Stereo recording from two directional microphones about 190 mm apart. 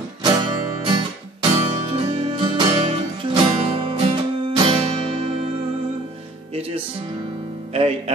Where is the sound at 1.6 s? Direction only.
30° right (ahead or behind).